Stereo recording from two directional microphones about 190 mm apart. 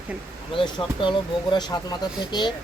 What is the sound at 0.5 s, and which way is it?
Speech, 25° left (ahead or behind).